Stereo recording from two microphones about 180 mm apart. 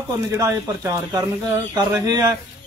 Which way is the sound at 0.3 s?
15° right (ahead or behind).